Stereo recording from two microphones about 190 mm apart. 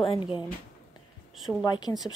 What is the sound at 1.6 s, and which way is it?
Speech, 20° left (ahead or behind).